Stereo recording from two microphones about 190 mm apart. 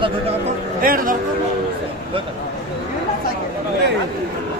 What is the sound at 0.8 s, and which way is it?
Speech, 50° right (ahead or behind).